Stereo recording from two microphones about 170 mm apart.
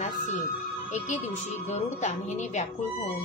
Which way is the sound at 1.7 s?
40° left (ahead or behind).